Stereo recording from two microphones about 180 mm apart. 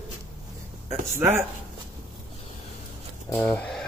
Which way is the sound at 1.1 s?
15° right (ahead or behind).